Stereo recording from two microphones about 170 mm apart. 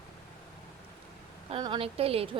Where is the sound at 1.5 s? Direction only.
30° right (ahead or behind).